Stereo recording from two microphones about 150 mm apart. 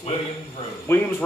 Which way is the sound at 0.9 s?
15° left (ahead or behind).